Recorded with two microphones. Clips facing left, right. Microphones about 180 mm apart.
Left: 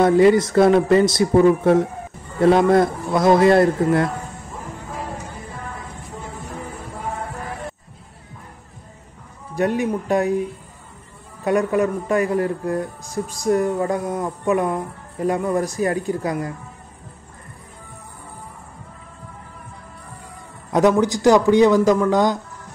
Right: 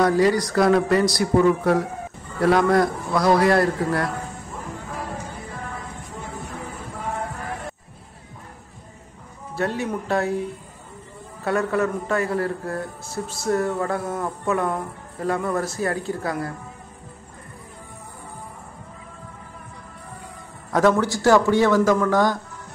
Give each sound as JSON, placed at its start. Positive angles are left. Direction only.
{"t": 0.0, "sound": "speech", "side_deg": 25}
{"t": 9.6, "sound": "speech", "side_deg": 15}
{"t": 11.4, "sound": "speech", "side_deg": 15}
{"t": 20.7, "sound": "speech", "side_deg": 15}